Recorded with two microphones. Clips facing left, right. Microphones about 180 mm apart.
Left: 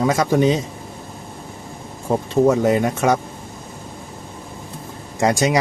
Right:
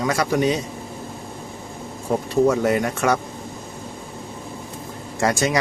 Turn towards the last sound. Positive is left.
turn(degrees=20)  # may be behind; listen again after turning